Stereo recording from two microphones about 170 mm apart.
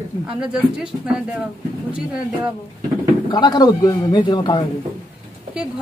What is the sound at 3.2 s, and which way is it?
A man's voice, 25° left (ahead or behind).